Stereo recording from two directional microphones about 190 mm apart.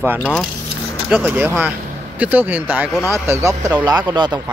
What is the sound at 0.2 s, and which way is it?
Speech, 5° left (ahead or behind).